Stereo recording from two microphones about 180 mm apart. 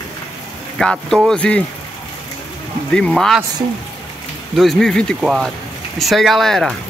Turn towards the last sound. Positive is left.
turn(degrees=0)  # may be behind; listen again after turning